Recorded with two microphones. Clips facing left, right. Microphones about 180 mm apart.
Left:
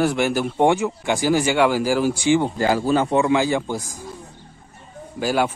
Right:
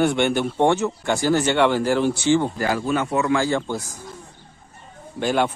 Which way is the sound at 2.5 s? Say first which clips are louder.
Left 3 dB; 25° left (ahead or behind).